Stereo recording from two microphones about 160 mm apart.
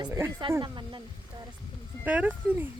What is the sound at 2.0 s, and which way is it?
Speech, 10° right (ahead or behind).